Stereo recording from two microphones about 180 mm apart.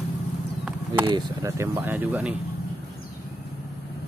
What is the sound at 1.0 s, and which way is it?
Speech, 20° right (ahead or behind).